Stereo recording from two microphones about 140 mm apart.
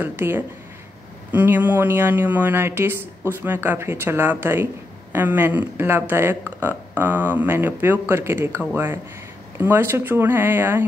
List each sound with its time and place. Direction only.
0.0 s speech: 15° right (ahead or behind)